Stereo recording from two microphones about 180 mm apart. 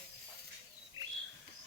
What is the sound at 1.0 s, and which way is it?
Bird, 20° right (ahead or behind).